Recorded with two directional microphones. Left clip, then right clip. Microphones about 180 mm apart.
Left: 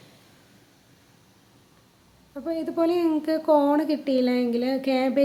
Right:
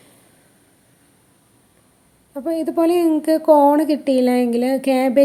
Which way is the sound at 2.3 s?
30° right (ahead or behind).